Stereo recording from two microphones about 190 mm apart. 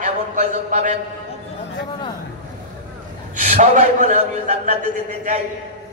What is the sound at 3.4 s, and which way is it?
A man's voice, 40° right (ahead or behind).